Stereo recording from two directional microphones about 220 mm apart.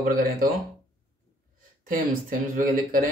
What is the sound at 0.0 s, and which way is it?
Speech, 40° right (ahead or behind).